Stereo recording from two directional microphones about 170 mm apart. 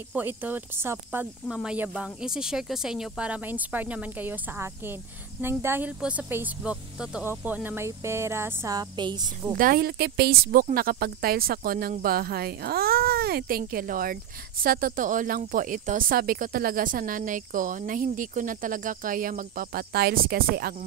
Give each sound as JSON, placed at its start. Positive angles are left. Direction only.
{"t": 0.1, "sound": "speech", "side_deg": -10}
{"t": 9.5, "sound": "speech", "side_deg": -55}